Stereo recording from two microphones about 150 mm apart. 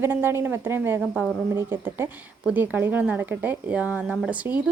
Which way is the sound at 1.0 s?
5° right (ahead or behind).